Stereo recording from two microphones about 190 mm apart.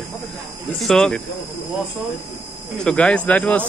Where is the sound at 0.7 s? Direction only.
Centre (ahead or behind).